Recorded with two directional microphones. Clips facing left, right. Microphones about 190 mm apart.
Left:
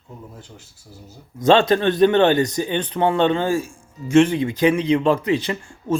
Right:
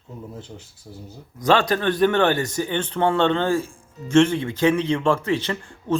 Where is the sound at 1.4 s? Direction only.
25° left (ahead or behind).